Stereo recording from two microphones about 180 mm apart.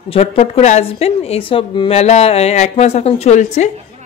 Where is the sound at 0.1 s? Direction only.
35° left (ahead or behind).